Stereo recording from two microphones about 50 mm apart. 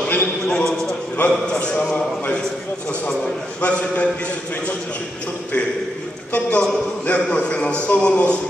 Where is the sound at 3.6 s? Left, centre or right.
Left.